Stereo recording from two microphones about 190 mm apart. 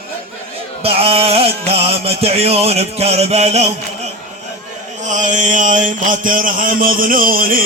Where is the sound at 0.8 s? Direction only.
30° right (ahead or behind).